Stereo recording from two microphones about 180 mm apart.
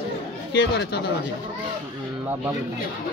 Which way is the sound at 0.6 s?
70° left (ahead or behind).